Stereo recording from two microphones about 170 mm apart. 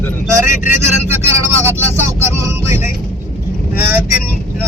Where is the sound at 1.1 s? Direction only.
15° right (ahead or behind).